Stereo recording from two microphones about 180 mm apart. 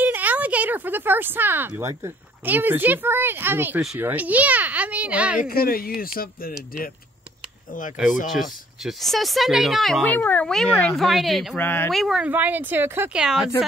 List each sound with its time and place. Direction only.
0.0 s speech: 10° right (ahead or behind)
5.4 s speech: 55° left (ahead or behind)
8.8 s speech: centre (ahead or behind)
11.9 s speech: centre (ahead or behind)